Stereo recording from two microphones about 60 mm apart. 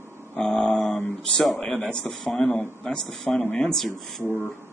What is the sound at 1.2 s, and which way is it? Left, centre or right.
A man's voice, centre.